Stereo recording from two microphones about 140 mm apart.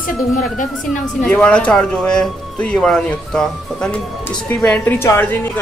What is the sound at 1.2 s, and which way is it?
Speech, 10° left (ahead or behind).